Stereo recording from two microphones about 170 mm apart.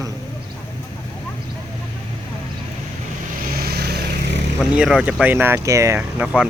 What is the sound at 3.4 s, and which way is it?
Vehicle, 65° right (ahead or behind).